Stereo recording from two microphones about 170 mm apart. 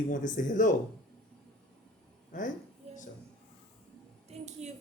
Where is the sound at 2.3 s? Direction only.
50° left (ahead or behind).